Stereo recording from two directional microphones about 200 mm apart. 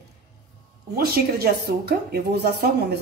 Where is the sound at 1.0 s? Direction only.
50° right (ahead or behind).